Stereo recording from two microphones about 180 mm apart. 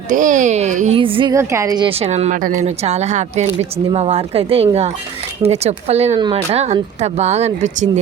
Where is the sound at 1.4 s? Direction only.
15° right (ahead or behind).